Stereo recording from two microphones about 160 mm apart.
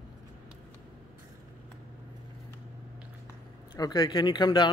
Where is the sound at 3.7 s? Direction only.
25° left (ahead or behind).